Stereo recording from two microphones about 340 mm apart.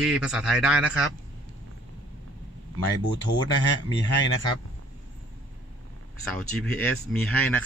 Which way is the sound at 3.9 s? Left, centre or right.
Left.